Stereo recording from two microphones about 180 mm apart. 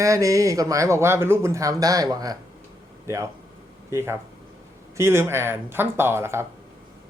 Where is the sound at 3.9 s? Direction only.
15° right (ahead or behind).